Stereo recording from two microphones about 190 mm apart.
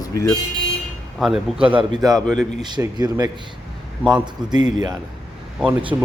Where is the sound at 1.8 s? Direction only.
20° right (ahead or behind).